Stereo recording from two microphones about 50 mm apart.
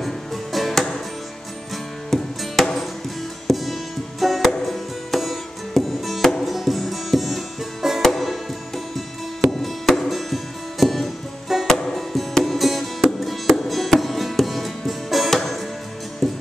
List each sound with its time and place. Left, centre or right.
0.0 s music: centre
2.0 s music: centre